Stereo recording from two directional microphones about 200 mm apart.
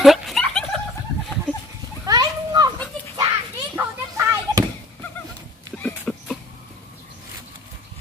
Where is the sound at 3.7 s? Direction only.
15° right (ahead or behind).